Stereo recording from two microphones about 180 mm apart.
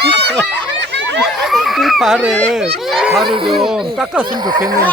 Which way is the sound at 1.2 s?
Centre (ahead or behind).